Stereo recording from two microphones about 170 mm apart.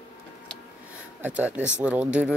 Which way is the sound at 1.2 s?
10° right (ahead or behind).